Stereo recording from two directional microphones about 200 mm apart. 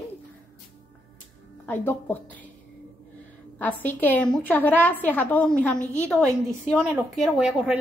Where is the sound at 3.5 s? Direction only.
10° left (ahead or behind).